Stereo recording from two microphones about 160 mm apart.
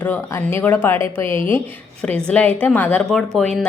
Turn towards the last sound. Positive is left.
turn(degrees=5)  # may be behind; listen again after turning